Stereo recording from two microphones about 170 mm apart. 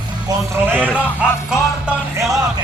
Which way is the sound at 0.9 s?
5° right (ahead or behind).